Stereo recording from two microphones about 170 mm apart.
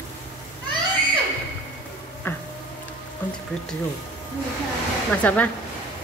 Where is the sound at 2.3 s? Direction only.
15° left (ahead or behind).